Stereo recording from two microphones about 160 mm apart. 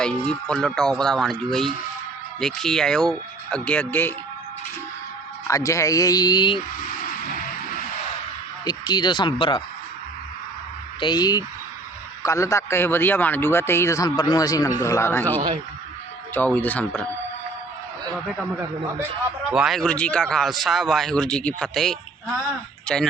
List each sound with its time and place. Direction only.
0.0 s a man's voice: 5° left (ahead or behind)
5.5 s a man's voice: 20° left (ahead or behind)
6.8 s music: 60° left (ahead or behind)
8.6 s a man's voice: 25° left (ahead or behind)
11.0 s a man's voice: 25° left (ahead or behind); by 17.1 s 10° left (ahead or behind)
19.5 s a man's voice: 5° right (ahead or behind)